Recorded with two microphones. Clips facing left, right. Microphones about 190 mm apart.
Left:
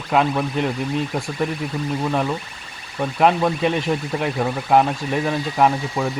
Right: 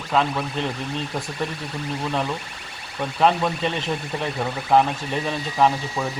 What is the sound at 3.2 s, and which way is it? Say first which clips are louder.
Speech: left 3 dB; 10° left (ahead or behind).